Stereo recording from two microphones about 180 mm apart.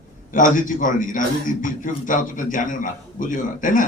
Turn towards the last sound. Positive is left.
turn(degrees=45)  # may be behind; listen again after turning